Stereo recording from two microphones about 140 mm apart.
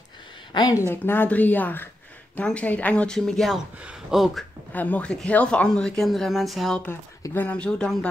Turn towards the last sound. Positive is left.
turn(degrees=5)  # may be behind; listen again after turning